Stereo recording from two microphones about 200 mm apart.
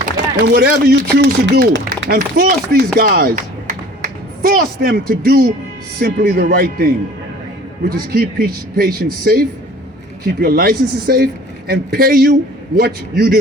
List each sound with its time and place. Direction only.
0.3 s a man's voice: 50° right (ahead or behind)